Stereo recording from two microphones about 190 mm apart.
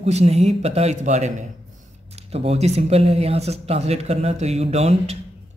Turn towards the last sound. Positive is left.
turn(degrees=-35)  # may be behind; listen again after turning